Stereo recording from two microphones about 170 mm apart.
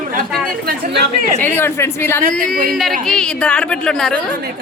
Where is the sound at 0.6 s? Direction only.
70° right (ahead or behind).